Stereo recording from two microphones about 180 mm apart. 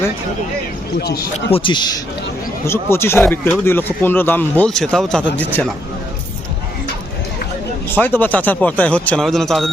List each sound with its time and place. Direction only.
1.5 s a man's voice: 30° left (ahead or behind)
2.6 s speech: 15° left (ahead or behind)
7.9 s speech: 10° left (ahead or behind)